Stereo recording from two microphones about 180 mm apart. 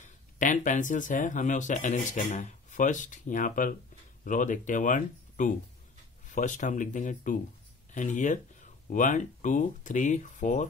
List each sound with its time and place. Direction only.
0.4 s speech: 45° left (ahead or behind)